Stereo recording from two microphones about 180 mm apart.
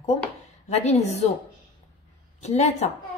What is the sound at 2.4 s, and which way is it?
Speech, 40° left (ahead or behind).